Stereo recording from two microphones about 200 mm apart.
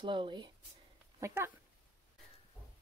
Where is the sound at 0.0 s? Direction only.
25° right (ahead or behind).